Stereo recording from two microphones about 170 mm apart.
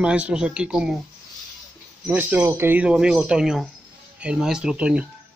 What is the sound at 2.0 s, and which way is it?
Speech, 10° right (ahead or behind).